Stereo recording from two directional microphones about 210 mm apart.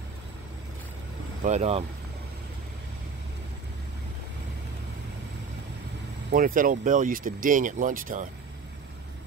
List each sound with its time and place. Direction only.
1.4 s speech: 30° right (ahead or behind)
6.3 s speech: 40° right (ahead or behind)